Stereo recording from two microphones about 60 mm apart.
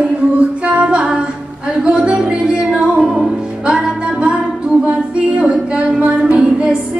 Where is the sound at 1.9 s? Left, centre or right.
Centre.